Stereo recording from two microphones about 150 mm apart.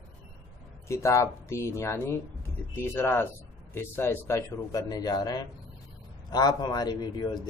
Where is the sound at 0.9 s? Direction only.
20° left (ahead or behind).